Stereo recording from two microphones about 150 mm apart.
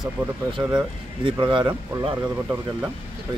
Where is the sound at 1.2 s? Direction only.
35° right (ahead or behind).